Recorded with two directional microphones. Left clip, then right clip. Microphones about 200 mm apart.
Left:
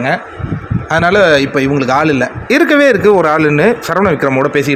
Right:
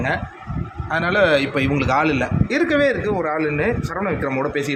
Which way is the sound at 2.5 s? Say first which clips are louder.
Left 10 dB; 30° left (ahead or behind).